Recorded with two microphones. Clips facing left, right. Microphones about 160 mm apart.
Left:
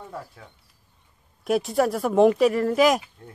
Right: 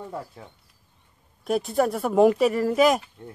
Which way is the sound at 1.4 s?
Centre (ahead or behind).